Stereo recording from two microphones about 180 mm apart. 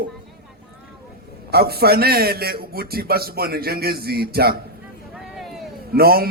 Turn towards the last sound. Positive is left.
turn(degrees=-55)  # may be behind; listen again after turning